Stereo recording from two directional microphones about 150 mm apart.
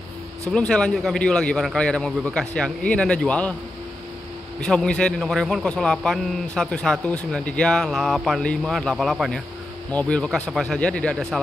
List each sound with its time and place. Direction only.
0.5 s a man's voice: 5° left (ahead or behind)
4.6 s a man's voice: 5° left (ahead or behind)